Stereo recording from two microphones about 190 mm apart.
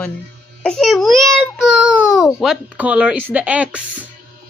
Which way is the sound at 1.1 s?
15° right (ahead or behind).